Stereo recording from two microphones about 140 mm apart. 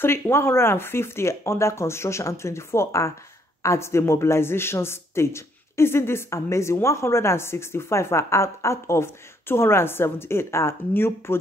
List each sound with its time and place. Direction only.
0.0 s a man's voice: 15° left (ahead or behind)